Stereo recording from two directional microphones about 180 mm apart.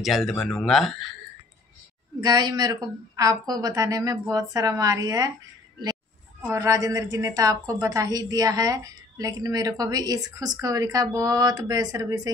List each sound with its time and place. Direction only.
0.0 s a man's voice: centre (ahead or behind)
2.2 s a woman's voice: 20° right (ahead or behind)
6.4 s a woman's voice: 15° right (ahead or behind)